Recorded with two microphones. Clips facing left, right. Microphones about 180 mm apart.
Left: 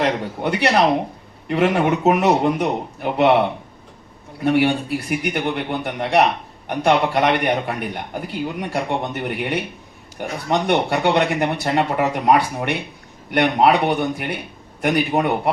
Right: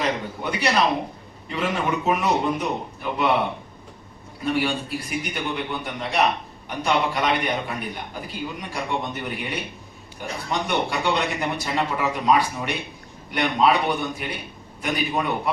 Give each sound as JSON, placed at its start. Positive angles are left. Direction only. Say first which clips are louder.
{"t": 0.0, "sound": "a man's voice", "louder": "left 5 dB", "side_deg": 65}
{"t": 4.4, "sound": "a man's voice", "louder": "left 7 dB", "side_deg": 65}